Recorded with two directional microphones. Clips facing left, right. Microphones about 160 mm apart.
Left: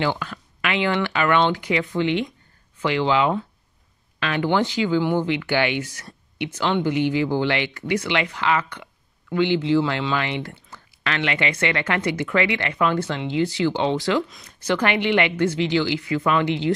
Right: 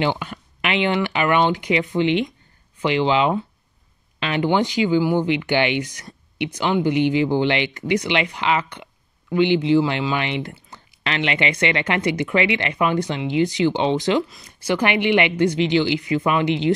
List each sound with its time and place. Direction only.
0.0 s speech: 15° right (ahead or behind)